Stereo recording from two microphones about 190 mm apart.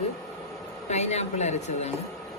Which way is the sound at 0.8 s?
35° left (ahead or behind).